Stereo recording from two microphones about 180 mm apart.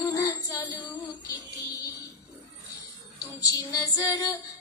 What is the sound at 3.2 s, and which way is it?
Female singing, 20° left (ahead or behind).